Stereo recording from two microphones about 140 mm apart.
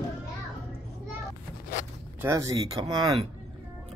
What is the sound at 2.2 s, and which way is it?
Speech, 20° right (ahead or behind).